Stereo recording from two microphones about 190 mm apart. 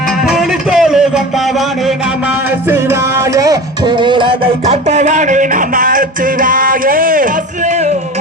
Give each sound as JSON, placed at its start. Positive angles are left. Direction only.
{"t": 0.3, "sound": "music", "side_deg": -5}
{"t": 2.6, "sound": "music", "side_deg": -15}